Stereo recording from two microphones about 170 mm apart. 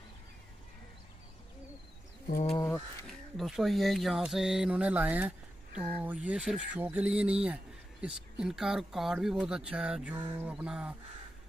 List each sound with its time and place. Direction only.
2.2 s speech: 45° left (ahead or behind)
3.1 s speech: centre (ahead or behind)
10.3 s a sound: 10° right (ahead or behind)